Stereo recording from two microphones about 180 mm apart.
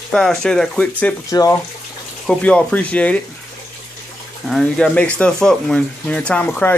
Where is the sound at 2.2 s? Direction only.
5° left (ahead or behind).